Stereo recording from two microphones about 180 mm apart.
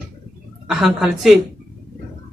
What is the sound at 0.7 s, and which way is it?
Speech, centre (ahead or behind).